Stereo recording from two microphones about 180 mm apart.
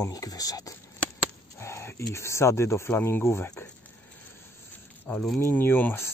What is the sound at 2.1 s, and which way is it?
Speech, 15° left (ahead or behind).